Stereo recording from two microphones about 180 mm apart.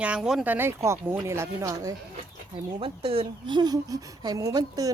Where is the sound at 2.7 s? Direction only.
30° right (ahead or behind).